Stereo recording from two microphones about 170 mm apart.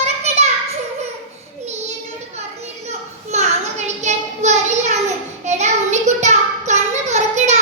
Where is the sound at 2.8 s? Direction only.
40° right (ahead or behind).